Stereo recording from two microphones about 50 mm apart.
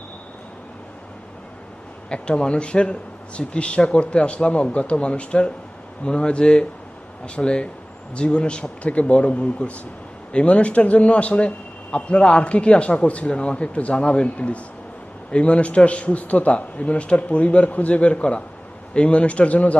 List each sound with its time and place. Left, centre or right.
2.0 s a man's voice: centre